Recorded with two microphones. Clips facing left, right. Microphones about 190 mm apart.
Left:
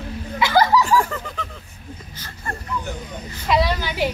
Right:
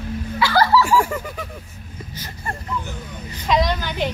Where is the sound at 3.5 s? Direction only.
5° left (ahead or behind).